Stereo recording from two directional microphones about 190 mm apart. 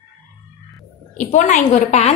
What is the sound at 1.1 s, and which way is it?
Speech, 40° left (ahead or behind).